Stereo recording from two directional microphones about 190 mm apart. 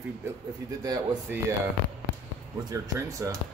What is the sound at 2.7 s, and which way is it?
Speech, 15° right (ahead or behind).